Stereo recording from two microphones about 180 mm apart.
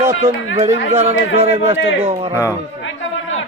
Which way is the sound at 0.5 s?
35° right (ahead or behind).